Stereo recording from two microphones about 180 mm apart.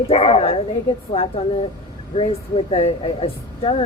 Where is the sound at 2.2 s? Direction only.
35° left (ahead or behind).